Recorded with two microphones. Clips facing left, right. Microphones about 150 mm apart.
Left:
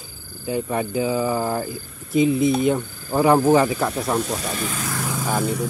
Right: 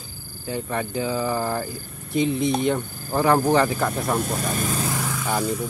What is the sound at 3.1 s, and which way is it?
Speech, 15° left (ahead or behind).